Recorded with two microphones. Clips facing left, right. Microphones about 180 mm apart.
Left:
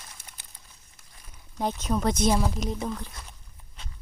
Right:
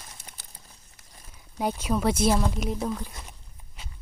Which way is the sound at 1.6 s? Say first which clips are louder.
Right 1 dB; 10° right (ahead or behind).